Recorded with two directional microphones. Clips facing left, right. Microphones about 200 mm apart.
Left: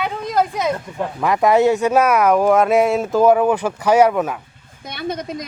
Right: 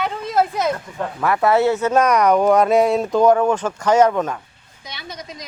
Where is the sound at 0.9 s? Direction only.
15° left (ahead or behind).